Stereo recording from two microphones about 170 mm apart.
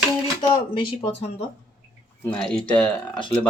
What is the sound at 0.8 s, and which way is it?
Speech, 30° left (ahead or behind).